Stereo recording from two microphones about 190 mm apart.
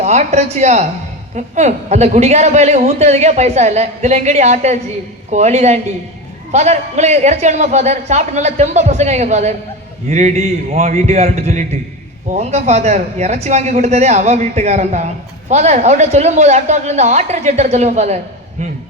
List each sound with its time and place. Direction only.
0.0 s speech: 35° right (ahead or behind)